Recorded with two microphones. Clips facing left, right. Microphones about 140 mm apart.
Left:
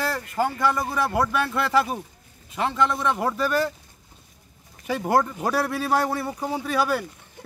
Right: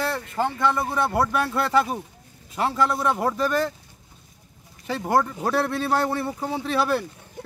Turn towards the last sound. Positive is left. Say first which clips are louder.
# right 1 dB
turn(degrees=-30)  # may be behind; listen again after turning